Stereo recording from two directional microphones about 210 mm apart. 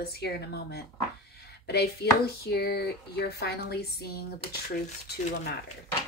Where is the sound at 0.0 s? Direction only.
50° left (ahead or behind).